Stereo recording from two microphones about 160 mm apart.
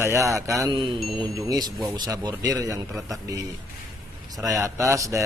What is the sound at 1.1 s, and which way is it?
Speech, 25° right (ahead or behind).